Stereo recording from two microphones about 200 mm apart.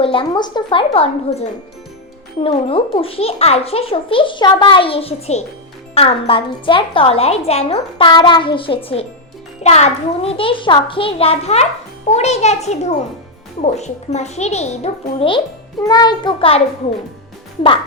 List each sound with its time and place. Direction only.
0.0 s a child's voice: 25° left (ahead or behind)